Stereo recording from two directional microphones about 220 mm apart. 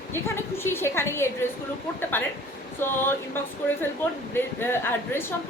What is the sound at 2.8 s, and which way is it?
Speech, 10° left (ahead or behind).